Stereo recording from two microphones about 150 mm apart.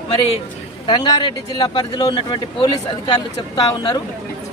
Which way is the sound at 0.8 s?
30° left (ahead or behind).